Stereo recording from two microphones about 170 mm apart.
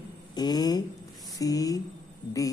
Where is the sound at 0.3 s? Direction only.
25° left (ahead or behind).